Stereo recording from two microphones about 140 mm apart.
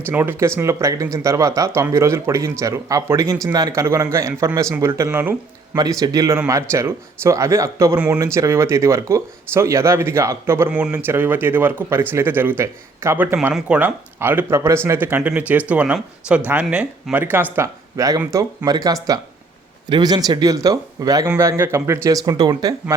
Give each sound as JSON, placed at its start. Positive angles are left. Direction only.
{"t": 0.1, "sound": "speech", "side_deg": -15}
{"t": 5.7, "sound": "speech", "side_deg": -25}
{"t": 7.9, "sound": "speech", "side_deg": -10}
{"t": 8.2, "sound": "speech", "side_deg": -20}